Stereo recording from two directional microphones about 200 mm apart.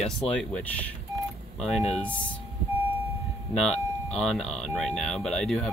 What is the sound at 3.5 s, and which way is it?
Speech, 5° left (ahead or behind).